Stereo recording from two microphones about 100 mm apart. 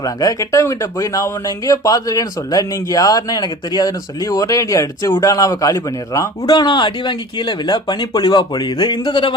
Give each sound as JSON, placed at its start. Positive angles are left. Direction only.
{"t": 0.0, "sound": "a man's voice", "side_deg": 40}